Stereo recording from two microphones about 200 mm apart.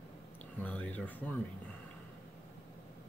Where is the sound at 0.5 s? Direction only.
10° left (ahead or behind).